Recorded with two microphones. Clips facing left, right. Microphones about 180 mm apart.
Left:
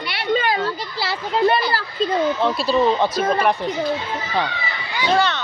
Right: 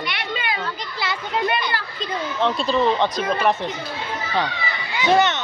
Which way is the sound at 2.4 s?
5° left (ahead or behind).